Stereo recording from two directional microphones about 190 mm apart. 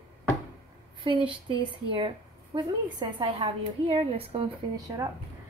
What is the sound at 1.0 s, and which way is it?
A woman's voice, 25° right (ahead or behind).